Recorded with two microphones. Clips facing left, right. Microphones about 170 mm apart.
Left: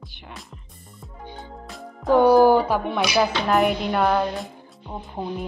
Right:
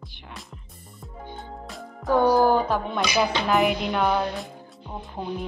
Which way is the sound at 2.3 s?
10° left (ahead or behind).